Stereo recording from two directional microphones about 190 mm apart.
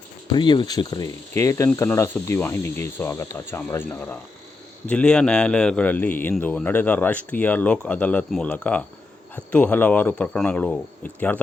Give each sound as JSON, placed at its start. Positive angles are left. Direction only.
{"t": 0.3, "sound": "a man's voice", "side_deg": 25}